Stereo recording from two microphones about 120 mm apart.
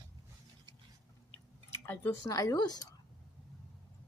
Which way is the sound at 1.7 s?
20° left (ahead or behind).